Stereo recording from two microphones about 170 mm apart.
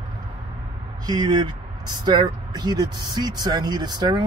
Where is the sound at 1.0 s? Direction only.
25° right (ahead or behind).